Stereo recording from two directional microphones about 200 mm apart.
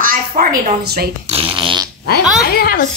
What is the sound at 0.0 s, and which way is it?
A woman's voice, 45° right (ahead or behind).